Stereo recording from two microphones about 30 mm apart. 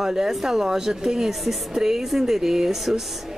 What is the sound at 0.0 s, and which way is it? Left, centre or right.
Speech, centre.